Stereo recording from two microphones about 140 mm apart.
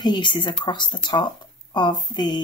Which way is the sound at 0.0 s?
30° left (ahead or behind).